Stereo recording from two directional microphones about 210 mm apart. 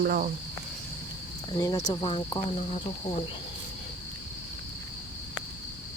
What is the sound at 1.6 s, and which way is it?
Speech, 15° left (ahead or behind).